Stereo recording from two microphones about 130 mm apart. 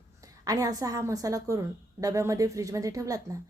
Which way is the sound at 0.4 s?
30° right (ahead or behind).